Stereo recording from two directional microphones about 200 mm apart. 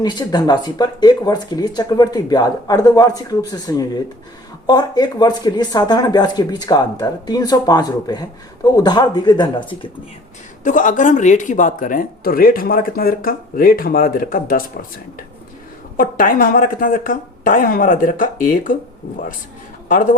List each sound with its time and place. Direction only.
0.0 s speech: 20° left (ahead or behind)
10.6 s speech: 40° left (ahead or behind)
16.0 s speech: 45° left (ahead or behind)
19.9 s a man's voice: 40° left (ahead or behind)